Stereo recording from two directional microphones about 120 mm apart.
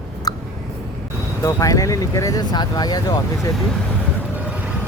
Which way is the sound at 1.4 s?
30° left (ahead or behind).